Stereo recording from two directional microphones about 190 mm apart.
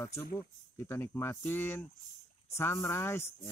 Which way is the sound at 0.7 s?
15° left (ahead or behind).